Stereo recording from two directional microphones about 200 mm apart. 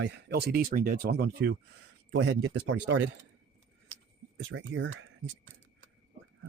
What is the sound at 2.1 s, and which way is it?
Speech, 65° right (ahead or behind).